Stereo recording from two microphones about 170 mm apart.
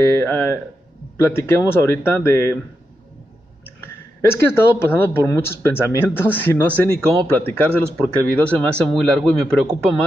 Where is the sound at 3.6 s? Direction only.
15° left (ahead or behind).